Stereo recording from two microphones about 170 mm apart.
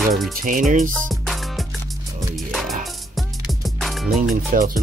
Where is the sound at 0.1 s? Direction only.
50° right (ahead or behind).